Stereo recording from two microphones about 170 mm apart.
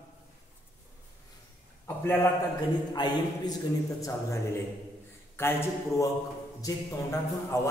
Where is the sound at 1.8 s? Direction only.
15° left (ahead or behind).